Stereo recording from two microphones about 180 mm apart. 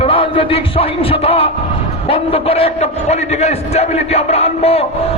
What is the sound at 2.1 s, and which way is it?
A man's voice, 35° left (ahead or behind).